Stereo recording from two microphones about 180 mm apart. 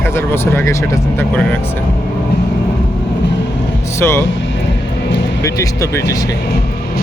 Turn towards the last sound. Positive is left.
turn(degrees=20)  # may be behind; listen again after turning